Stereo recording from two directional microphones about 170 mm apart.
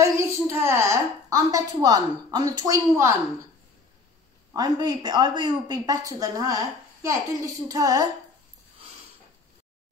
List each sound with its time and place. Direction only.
0.0 s a woman's voice: 15° right (ahead or behind)
4.6 s speech: 25° right (ahead or behind)